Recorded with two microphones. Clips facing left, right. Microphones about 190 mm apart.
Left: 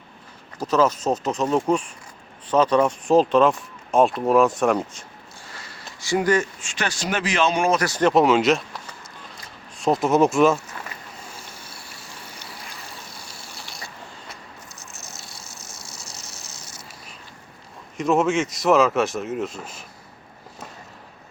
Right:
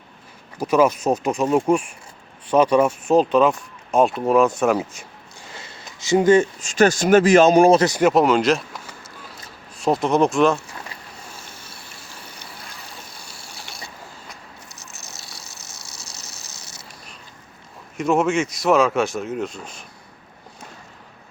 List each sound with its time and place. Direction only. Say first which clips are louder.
0.6 s speech: right 3 dB; 10° right (ahead or behind)
5.5 s a sound: right 4 dB; 25° right (ahead or behind)
6.0 s speech: right 6 dB; 20° right (ahead or behind)
6.6 s speech: right 12 dB; 45° right (ahead or behind)
7.9 s speech: right 2 dB; 15° right (ahead or behind)
8.1 s speech: even; centre (ahead or behind)
9.7 s speech: even; centre (ahead or behind)
15.1 s a sound: even; 75° right (ahead or behind)
17.9 s speech: right 1 dB; centre (ahead or behind)